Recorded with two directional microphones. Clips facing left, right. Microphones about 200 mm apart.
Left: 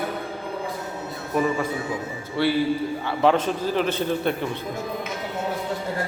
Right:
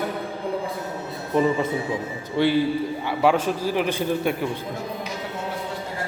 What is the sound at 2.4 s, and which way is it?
A man's voice, 15° right (ahead or behind).